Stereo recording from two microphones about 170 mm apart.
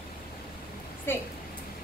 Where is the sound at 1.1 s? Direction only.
15° left (ahead or behind).